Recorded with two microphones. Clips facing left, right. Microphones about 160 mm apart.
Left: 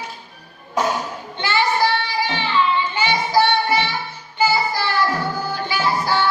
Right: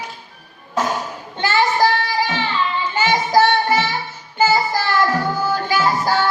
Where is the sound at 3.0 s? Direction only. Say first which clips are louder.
Right 4 dB; 45° right (ahead or behind).